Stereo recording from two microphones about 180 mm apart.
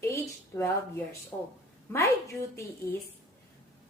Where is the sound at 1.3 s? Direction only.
15° left (ahead or behind).